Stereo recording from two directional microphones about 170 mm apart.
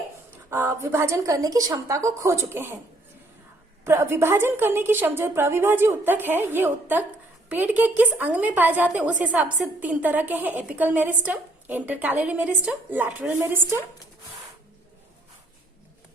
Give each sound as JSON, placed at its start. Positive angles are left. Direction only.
{"t": 0.3, "sound": "a woman's voice", "side_deg": -15}
{"t": 3.8, "sound": "a woman's voice", "side_deg": -15}